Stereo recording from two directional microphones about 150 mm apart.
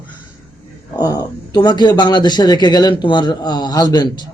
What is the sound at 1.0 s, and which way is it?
A man's voice, 25° left (ahead or behind).